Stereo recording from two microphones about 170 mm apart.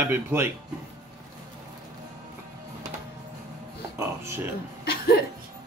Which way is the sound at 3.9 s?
15° right (ahead or behind).